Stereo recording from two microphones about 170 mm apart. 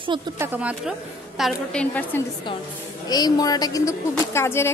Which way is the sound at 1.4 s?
5° left (ahead or behind).